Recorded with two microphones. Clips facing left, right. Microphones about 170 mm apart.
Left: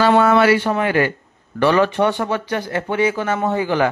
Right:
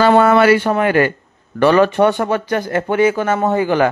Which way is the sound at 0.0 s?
50° right (ahead or behind).